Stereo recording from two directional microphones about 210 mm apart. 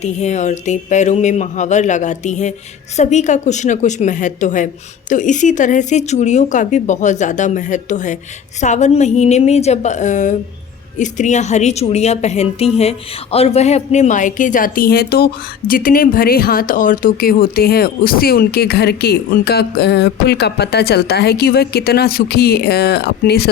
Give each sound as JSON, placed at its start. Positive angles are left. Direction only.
{"t": 0.0, "sound": "a woman's voice", "side_deg": 35}